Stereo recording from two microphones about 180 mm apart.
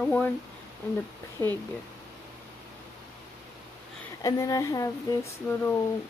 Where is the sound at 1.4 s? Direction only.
10° left (ahead or behind).